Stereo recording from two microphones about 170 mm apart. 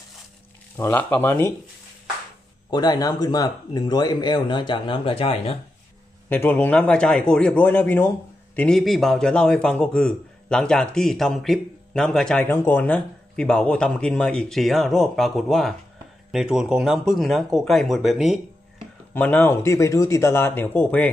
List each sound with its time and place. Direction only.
0.7 s speech: 10° left (ahead or behind)
2.7 s speech: 25° left (ahead or behind)
6.2 s a man's voice: 10° left (ahead or behind)
19.1 s speech: 10° left (ahead or behind)